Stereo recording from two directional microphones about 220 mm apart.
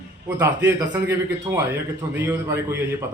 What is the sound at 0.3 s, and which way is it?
A man's voice, 10° right (ahead or behind).